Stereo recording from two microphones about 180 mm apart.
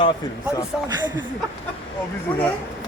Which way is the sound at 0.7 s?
5° right (ahead or behind).